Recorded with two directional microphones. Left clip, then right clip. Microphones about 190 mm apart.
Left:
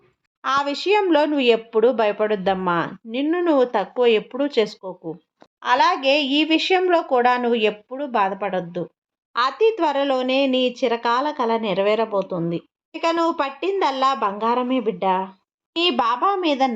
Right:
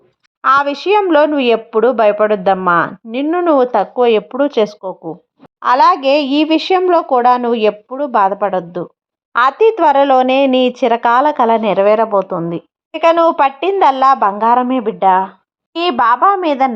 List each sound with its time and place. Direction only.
0.4 s speech: 15° right (ahead or behind)
12.9 s speech: 35° right (ahead or behind); by 16.7 s 15° right (ahead or behind)